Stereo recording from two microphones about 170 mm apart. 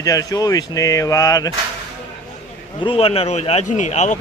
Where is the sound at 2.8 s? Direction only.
35° left (ahead or behind).